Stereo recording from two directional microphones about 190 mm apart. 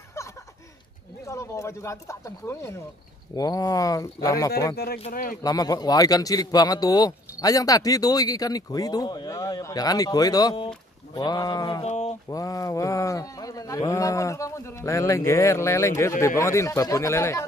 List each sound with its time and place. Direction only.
1.2 s a man's voice: 15° left (ahead or behind)
4.7 s speech: 55° left (ahead or behind)
5.4 s a man's voice: 20° left (ahead or behind)
11.8 s a sound: 35° left (ahead or behind)
12.3 s speech: 15° left (ahead or behind)